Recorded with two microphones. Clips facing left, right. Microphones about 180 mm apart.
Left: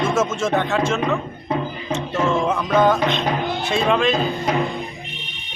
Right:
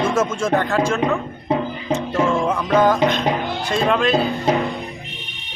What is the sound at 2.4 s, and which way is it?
Music, centre (ahead or behind).